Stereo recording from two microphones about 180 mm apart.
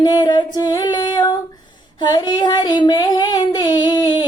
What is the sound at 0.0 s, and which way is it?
Female singing, 25° left (ahead or behind).